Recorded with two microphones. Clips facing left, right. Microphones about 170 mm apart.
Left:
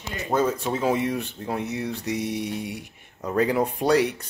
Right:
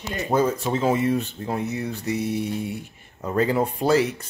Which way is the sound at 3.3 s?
Centre (ahead or behind).